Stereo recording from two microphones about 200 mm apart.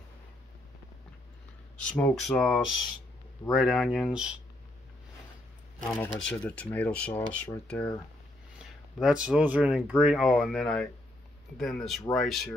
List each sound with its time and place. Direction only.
1.8 s speech: 5° left (ahead or behind)
5.8 s speech: 5° left (ahead or behind)
9.0 s speech: 5° right (ahead or behind)